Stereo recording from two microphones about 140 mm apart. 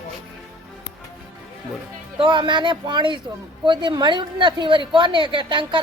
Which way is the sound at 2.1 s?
35° right (ahead or behind).